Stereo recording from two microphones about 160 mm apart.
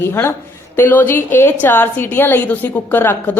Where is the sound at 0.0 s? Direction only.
15° left (ahead or behind).